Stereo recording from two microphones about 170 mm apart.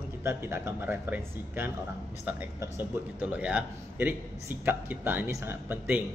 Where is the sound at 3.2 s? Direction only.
5° right (ahead or behind).